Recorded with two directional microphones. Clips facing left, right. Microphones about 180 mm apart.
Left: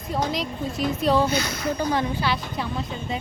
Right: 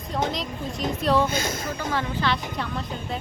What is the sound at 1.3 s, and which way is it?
Speech, 50° right (ahead or behind).